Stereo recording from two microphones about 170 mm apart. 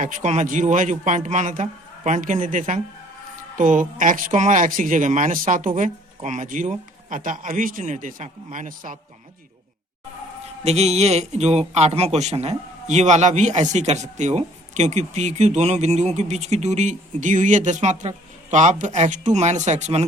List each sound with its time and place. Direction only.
0.0 s speech: 45° right (ahead or behind)
10.6 s speech: 40° right (ahead or behind)